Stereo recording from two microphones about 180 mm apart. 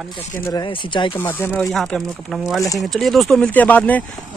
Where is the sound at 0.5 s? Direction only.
25° left (ahead or behind).